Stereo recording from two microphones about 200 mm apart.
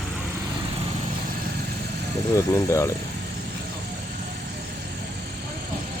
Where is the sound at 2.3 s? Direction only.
15° left (ahead or behind).